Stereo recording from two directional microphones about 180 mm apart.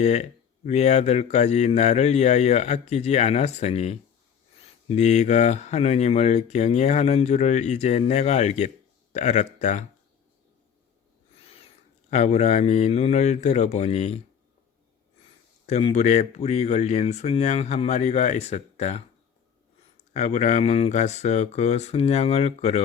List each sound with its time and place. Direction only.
0.0 s speech: 35° left (ahead or behind)
12.1 s speech: 40° left (ahead or behind)
15.6 s speech: 35° left (ahead or behind)
20.1 s speech: 40° left (ahead or behind)